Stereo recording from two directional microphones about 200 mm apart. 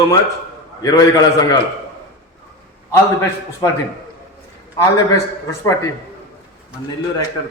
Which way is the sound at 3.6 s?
20° left (ahead or behind).